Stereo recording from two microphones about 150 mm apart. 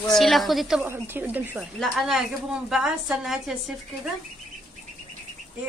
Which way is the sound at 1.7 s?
Centre (ahead or behind).